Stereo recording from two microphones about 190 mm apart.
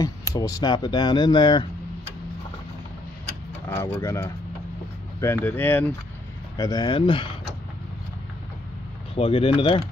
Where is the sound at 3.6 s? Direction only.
15° left (ahead or behind).